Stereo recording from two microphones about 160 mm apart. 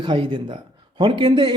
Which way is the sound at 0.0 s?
30° right (ahead or behind).